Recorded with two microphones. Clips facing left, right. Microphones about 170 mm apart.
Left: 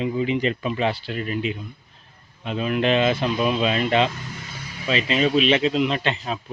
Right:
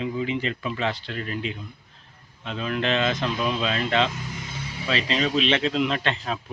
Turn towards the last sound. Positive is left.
turn(degrees=5)  # may be behind; listen again after turning